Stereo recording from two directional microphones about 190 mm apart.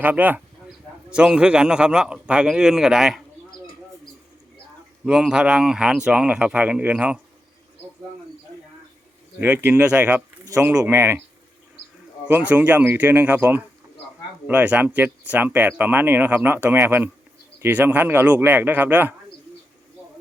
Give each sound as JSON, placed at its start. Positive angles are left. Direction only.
{"t": 0.0, "sound": "a man's voice", "side_deg": -10}
{"t": 5.0, "sound": "a man's voice", "side_deg": -5}
{"t": 9.4, "sound": "speech", "side_deg": -10}
{"t": 12.3, "sound": "speech", "side_deg": -5}